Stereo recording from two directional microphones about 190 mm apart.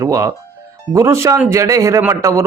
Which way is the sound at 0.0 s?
15° right (ahead or behind).